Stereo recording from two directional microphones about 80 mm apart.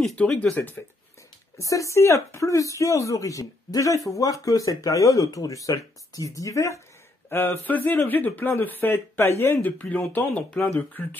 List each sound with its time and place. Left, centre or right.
0.4 s a man's voice: centre
1.6 s speech: left
7.2 s a man's voice: left
9.7 s a man's voice: centre